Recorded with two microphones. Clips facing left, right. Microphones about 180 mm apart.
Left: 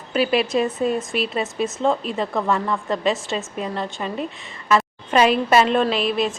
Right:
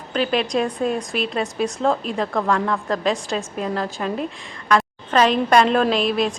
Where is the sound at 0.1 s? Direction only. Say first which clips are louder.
Left 1 dB; 5° left (ahead or behind).